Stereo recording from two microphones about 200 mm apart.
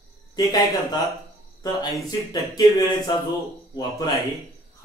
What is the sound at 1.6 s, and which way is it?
Speech, 20° left (ahead or behind).